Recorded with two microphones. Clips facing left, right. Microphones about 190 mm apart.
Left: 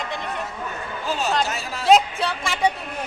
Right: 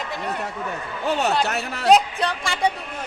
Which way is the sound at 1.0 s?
65° right (ahead or behind).